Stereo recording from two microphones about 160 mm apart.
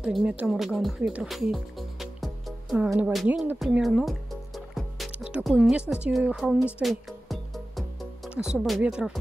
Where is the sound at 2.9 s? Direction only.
15° right (ahead or behind).